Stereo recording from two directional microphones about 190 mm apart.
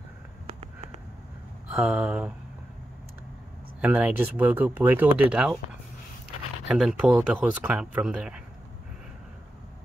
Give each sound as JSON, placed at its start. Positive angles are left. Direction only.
{"t": 1.7, "sound": "speech", "side_deg": -5}
{"t": 3.8, "sound": "speech", "side_deg": -10}
{"t": 6.7, "sound": "speech", "side_deg": -5}